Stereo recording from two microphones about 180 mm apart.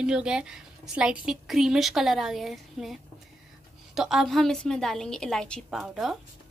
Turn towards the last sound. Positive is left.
turn(degrees=0)  # may be behind; listen again after turning